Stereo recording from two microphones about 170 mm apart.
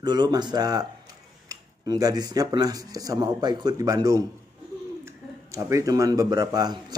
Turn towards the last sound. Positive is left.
turn(degrees=-25)  # may be behind; listen again after turning